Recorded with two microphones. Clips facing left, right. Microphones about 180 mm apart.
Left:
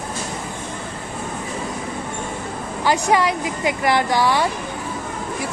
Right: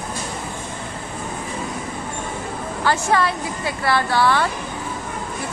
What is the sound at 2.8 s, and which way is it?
Speech, 15° left (ahead or behind).